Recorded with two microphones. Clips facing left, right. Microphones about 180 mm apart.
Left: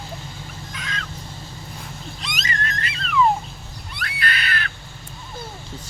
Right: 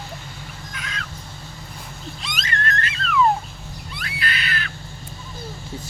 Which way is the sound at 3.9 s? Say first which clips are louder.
Left 2 dB; 55° left (ahead or behind).